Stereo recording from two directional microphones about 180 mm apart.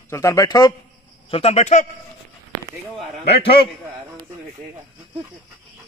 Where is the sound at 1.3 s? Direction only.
35° left (ahead or behind).